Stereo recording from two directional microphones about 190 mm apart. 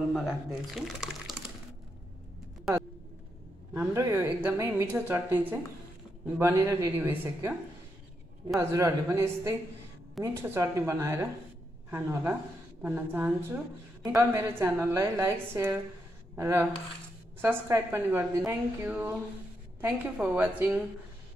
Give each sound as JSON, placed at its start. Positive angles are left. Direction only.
{"t": 0.1, "sound": "speech", "side_deg": 0}
{"t": 3.7, "sound": "a woman's voice", "side_deg": -15}
{"t": 8.5, "sound": "a woman's voice", "side_deg": -15}